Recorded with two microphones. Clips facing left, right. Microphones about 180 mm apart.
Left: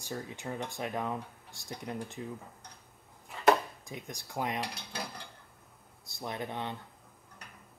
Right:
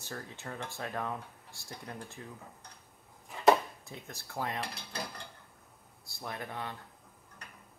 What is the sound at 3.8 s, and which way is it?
Speech, 15° left (ahead or behind).